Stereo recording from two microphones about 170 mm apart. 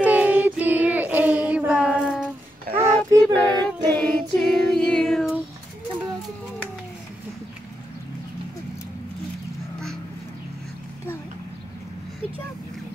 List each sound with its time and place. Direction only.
0.0 s child singing: 10° right (ahead or behind)
2.8 s child singing: 15° right (ahead or behind)
3.6 s child singing: 10° left (ahead or behind)